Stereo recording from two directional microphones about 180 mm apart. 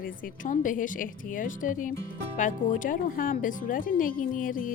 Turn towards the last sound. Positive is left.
turn(degrees=50)  # may be behind; listen again after turning